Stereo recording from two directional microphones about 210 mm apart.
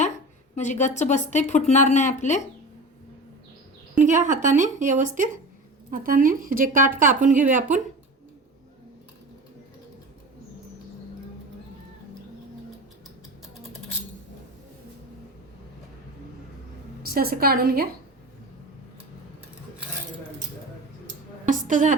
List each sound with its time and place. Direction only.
0.5 s a woman's voice: 35° left (ahead or behind)
4.0 s speech: 35° right (ahead or behind)
17.0 s a woman's voice: 45° right (ahead or behind)
21.4 s a woman's voice: 40° right (ahead or behind)